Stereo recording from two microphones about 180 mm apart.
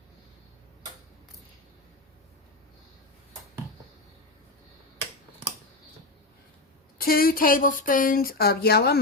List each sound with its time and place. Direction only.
7.0 s speech: 55° left (ahead or behind)